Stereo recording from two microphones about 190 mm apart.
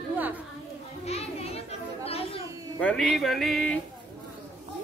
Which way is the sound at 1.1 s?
30° left (ahead or behind).